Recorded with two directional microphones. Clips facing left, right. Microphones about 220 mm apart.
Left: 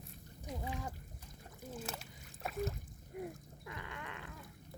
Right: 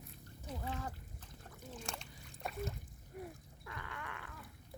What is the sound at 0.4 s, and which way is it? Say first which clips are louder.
Trickle: left 1 dB; 15° left (ahead or behind).